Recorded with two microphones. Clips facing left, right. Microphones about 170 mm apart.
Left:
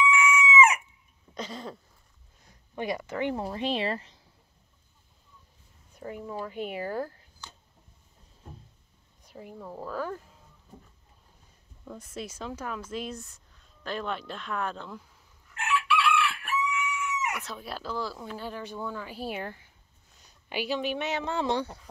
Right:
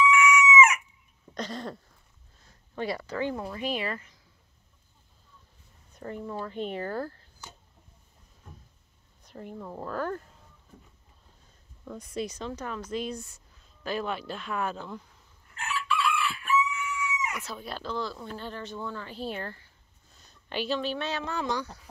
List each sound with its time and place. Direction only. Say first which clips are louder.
0.0 s chicken: right 3 dB; 30° left (ahead or behind)
1.3 s a sound: right 2 dB; 5° left (ahead or behind)
2.4 s speech: even; 15° left (ahead or behind)
5.9 s speech: right 1 dB; 10° left (ahead or behind)
9.2 s speech: right 2 dB; 5° left (ahead or behind)
11.8 s speech: right 5 dB; 5° left (ahead or behind)
15.5 s chicken: left 3 dB; 75° left (ahead or behind)
17.4 s speech: even; centre (ahead or behind); by 21.7 s 30° left (ahead or behind)